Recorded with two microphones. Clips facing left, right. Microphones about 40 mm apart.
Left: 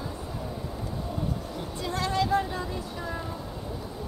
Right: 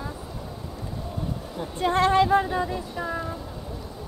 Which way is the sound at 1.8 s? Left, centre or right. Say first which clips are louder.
Right 8 dB; right.